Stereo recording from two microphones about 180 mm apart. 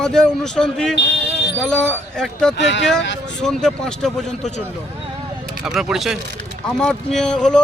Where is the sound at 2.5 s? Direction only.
75° left (ahead or behind).